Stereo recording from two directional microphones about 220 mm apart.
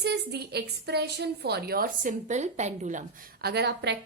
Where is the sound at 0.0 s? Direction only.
50° right (ahead or behind); by 3.0 s 30° right (ahead or behind).